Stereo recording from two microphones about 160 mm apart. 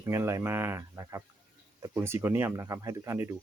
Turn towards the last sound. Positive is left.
turn(degrees=-15)  # may be behind; listen again after turning